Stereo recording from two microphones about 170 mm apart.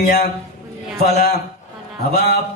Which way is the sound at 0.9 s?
65° left (ahead or behind).